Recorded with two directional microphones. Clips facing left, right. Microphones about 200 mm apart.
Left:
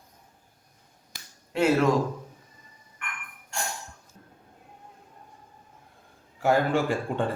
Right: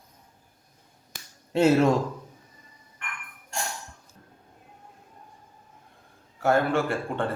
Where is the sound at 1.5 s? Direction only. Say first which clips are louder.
Right 3 dB; 25° right (ahead or behind).